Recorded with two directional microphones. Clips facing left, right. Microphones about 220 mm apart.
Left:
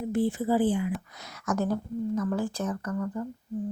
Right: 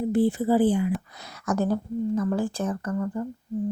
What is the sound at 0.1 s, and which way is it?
Speech, 35° right (ahead or behind).